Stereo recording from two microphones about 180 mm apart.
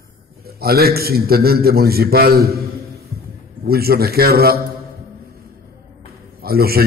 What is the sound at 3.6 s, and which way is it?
A man's voice, 60° right (ahead or behind).